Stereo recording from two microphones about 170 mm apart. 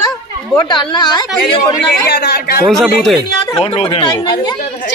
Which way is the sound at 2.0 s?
70° left (ahead or behind).